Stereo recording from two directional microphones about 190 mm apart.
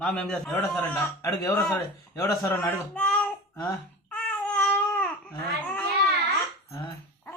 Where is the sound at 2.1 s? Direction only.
15° left (ahead or behind).